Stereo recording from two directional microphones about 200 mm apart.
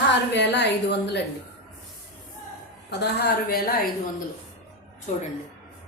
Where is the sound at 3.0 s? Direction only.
55° left (ahead or behind).